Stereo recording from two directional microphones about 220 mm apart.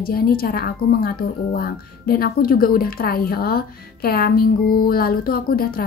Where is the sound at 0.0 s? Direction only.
40° left (ahead or behind).